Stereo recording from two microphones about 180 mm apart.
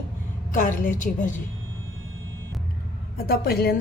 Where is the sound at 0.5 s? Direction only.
45° left (ahead or behind).